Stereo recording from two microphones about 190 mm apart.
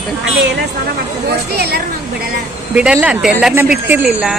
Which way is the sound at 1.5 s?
55° right (ahead or behind).